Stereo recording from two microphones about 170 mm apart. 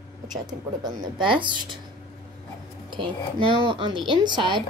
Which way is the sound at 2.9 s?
30° right (ahead or behind).